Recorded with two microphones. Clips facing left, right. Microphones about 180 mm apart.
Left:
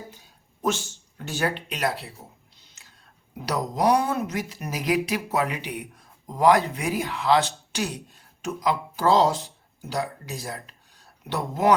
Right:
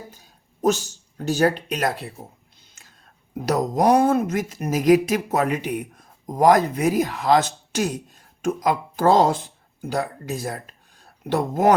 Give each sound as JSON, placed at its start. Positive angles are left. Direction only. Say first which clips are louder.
{"t": 0.6, "sound": "speech", "louder": "right 6 dB", "side_deg": -40}
{"t": 2.8, "sound": "a sound", "louder": "right 3 dB", "side_deg": -50}
{"t": 3.3, "sound": "speech", "louder": "right 6 dB", "side_deg": -45}